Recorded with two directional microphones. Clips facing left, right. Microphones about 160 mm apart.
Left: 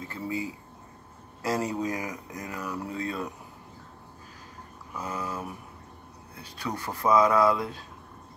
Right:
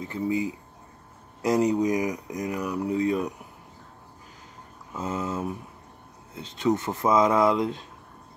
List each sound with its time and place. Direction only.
0.0 s speech: 20° right (ahead or behind)
4.9 s speech: 25° right (ahead or behind)